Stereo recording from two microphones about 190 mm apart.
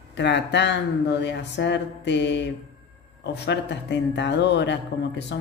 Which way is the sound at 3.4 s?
65° left (ahead or behind).